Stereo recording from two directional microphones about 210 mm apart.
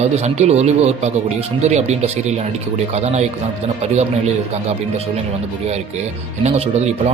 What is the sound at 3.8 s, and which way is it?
Speech, 30° right (ahead or behind).